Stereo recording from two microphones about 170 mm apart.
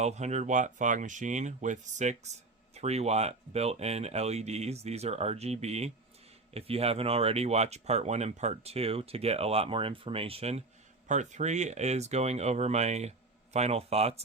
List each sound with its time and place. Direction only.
0.0 s speech: 40° right (ahead or behind)